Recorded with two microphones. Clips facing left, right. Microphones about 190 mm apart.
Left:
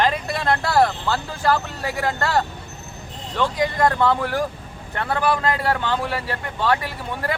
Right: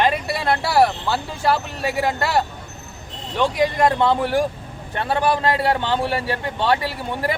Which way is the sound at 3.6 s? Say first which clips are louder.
Right 1 dB; 20° right (ahead or behind).